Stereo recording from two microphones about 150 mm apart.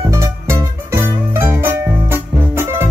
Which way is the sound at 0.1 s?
20° right (ahead or behind).